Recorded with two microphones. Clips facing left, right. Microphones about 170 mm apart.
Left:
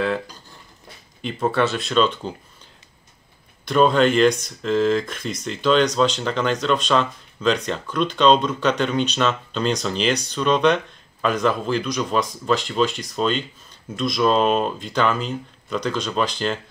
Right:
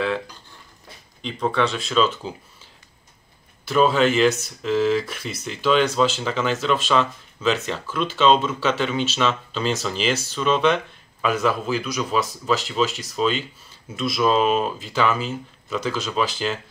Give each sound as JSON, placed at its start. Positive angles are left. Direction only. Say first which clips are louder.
{"t": 1.2, "sound": "speech", "louder": "left 2 dB", "side_deg": 5}
{"t": 3.6, "sound": "speech", "louder": "left 1 dB", "side_deg": -5}